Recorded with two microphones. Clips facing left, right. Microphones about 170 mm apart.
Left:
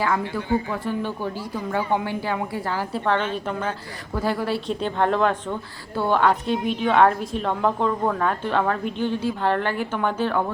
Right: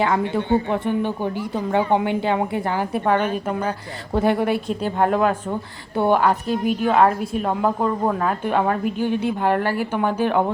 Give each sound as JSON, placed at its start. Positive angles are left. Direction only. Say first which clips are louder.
{"t": 0.0, "sound": "speech", "louder": "right 4 dB", "side_deg": -25}
{"t": 4.1, "sound": "speech", "louder": "right 5 dB", "side_deg": -20}
{"t": 4.7, "sound": "a woman's voice", "louder": "right 2 dB", "side_deg": -5}